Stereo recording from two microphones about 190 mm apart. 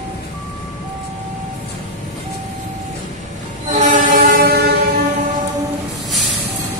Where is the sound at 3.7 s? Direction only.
40° right (ahead or behind).